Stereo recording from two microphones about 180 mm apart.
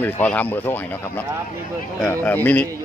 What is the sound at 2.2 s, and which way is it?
Speech, 10° left (ahead or behind).